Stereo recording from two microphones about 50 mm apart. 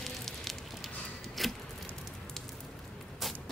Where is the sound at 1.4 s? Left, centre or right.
Centre.